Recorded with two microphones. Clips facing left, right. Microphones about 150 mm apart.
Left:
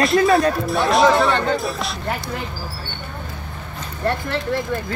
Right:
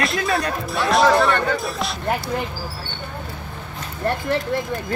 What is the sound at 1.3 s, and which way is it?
Speech, 20° left (ahead or behind).